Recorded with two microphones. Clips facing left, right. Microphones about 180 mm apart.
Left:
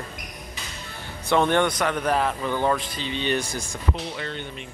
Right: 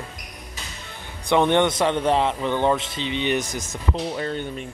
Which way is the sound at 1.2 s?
20° right (ahead or behind).